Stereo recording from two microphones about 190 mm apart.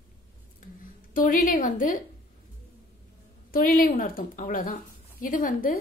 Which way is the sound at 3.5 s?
50° left (ahead or behind).